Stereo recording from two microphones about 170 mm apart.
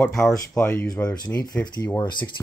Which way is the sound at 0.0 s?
10° left (ahead or behind).